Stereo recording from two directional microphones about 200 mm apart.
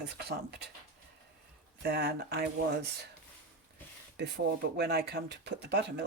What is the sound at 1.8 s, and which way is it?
Speech, 55° right (ahead or behind).